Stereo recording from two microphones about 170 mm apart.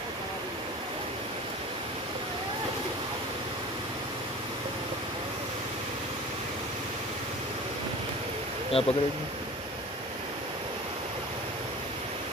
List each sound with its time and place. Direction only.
8.7 s speech: 35° left (ahead or behind)